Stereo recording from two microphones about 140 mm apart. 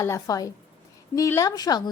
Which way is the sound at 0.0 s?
25° left (ahead or behind).